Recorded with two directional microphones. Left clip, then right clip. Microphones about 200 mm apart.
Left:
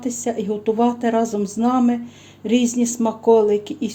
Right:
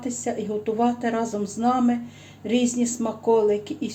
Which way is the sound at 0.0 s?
45° left (ahead or behind).